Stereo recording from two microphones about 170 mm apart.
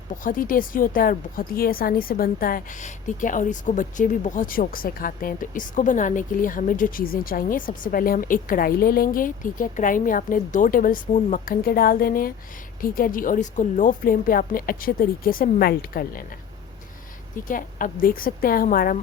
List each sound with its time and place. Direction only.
0.2 s a woman's voice: 55° left (ahead or behind)
17.5 s a woman's voice: 55° left (ahead or behind)